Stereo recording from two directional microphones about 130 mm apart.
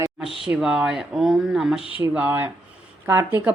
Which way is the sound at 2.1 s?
15° right (ahead or behind).